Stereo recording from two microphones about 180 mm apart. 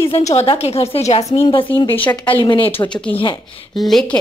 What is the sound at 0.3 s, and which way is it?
A woman's voice, 35° left (ahead or behind).